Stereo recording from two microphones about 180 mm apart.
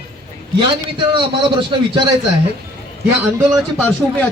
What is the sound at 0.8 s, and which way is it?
A man's voice, 25° right (ahead or behind).